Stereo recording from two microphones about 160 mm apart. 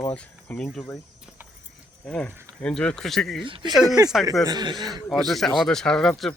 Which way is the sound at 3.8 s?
20° right (ahead or behind).